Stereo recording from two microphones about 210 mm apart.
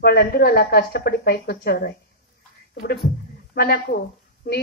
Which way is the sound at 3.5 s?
50° left (ahead or behind).